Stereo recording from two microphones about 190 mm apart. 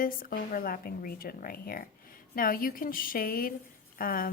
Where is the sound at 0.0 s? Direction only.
50° left (ahead or behind).